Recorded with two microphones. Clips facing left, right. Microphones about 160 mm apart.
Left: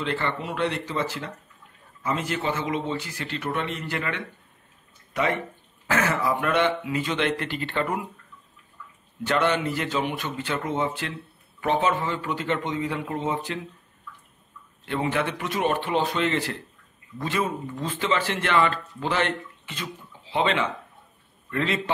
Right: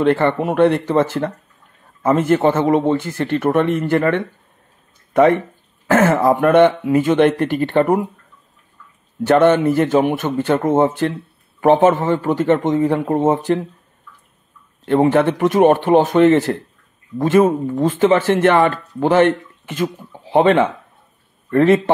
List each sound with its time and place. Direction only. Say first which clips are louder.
0.0 s speech: right 13 dB; 55° right (ahead or behind)
9.2 s speech: right 11 dB; 50° right (ahead or behind)
14.9 s speech: right 12 dB; 50° right (ahead or behind)